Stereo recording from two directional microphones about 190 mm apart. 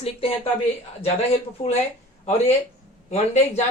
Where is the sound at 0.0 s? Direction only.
30° left (ahead or behind).